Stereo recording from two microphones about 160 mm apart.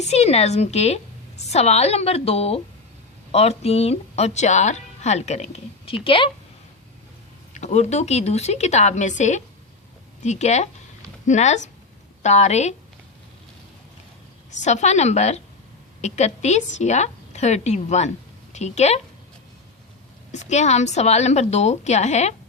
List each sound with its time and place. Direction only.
0.0 s a woman's voice: 45° left (ahead or behind)
7.5 s a woman's voice: 45° left (ahead or behind)
14.6 s a woman's voice: 45° left (ahead or behind)
20.3 s a woman's voice: 45° left (ahead or behind)